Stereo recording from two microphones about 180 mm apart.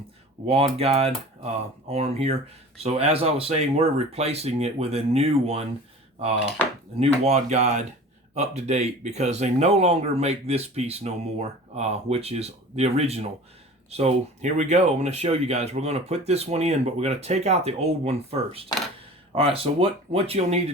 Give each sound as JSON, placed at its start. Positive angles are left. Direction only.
{"t": 0.4, "sound": "speech", "side_deg": -35}
{"t": 7.0, "sound": "speech", "side_deg": -35}